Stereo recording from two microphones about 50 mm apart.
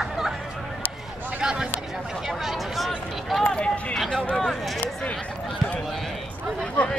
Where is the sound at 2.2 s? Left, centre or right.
Centre.